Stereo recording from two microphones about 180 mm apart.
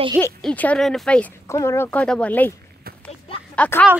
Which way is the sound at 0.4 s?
5° left (ahead or behind).